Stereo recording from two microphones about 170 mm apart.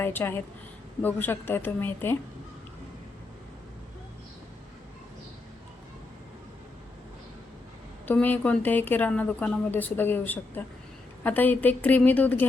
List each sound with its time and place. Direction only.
0.0 s a woman's voice: 15° left (ahead or behind)
8.0 s a woman's voice: 10° left (ahead or behind)